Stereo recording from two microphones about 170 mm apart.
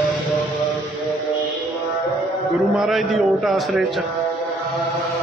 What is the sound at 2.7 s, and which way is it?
A man's voice, centre (ahead or behind).